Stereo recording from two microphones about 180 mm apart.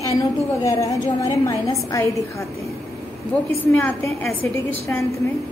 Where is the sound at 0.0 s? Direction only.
20° left (ahead or behind).